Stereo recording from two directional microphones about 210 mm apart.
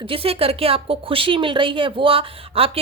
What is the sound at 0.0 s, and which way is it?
A woman's voice, 25° right (ahead or behind).